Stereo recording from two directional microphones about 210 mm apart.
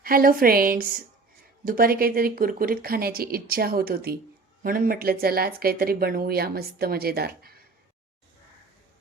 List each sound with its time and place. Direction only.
0.0 s speech: 45° right (ahead or behind)